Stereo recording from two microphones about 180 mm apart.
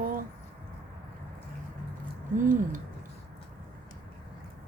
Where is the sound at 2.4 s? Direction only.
45° right (ahead or behind).